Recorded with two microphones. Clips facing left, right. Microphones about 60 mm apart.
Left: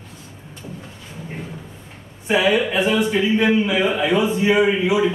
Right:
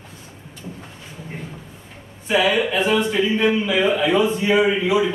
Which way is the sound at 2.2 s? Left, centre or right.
Left.